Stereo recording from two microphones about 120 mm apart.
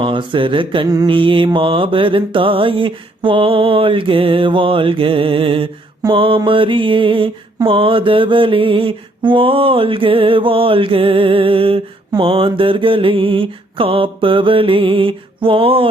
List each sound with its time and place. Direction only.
0.0 s mantra: 45° right (ahead or behind)